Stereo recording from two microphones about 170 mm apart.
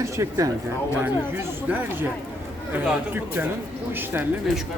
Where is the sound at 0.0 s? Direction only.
20° right (ahead or behind).